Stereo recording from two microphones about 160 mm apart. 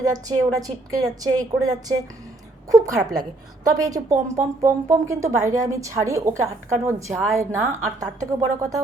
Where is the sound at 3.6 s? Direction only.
20° right (ahead or behind).